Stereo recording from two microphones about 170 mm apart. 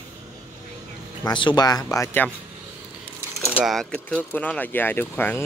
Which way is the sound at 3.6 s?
Centre (ahead or behind).